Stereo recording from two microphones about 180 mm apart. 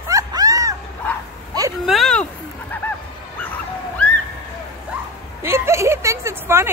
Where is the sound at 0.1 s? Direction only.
20° right (ahead or behind).